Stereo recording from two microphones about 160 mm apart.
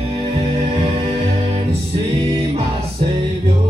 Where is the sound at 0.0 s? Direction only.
35° right (ahead or behind).